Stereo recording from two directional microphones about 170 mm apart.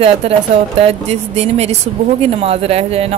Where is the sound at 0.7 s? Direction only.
35° right (ahead or behind).